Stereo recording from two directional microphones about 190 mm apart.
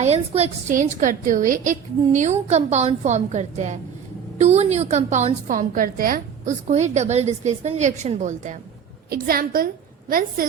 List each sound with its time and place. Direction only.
0.0 s a woman's voice: 35° right (ahead or behind)
9.0 s a woman's voice: 50° right (ahead or behind)